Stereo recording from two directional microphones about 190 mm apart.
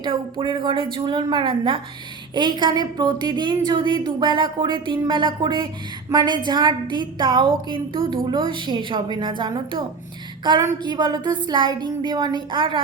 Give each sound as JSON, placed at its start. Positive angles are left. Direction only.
{"t": 0.0, "sound": "a woman's voice", "side_deg": -25}